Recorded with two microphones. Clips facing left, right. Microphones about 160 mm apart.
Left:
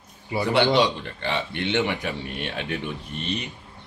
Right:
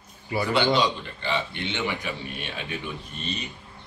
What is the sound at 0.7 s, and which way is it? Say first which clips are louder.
Speech: left 3 dB; 65° left (ahead or behind).